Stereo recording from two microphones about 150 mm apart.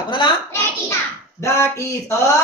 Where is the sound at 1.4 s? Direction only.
20° left (ahead or behind).